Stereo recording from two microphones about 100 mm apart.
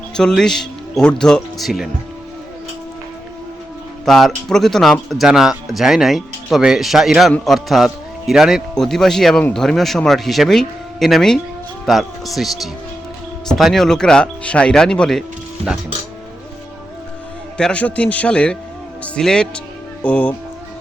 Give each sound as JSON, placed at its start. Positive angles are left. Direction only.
{"t": 0.1, "sound": "speech", "side_deg": 5}
{"t": 4.0, "sound": "speech", "side_deg": 5}
{"t": 17.6, "sound": "speech", "side_deg": 10}